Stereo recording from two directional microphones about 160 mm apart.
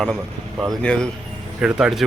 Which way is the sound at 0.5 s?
Centre (ahead or behind).